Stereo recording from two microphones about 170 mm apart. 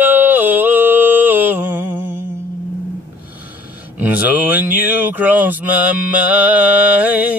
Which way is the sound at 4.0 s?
10° right (ahead or behind).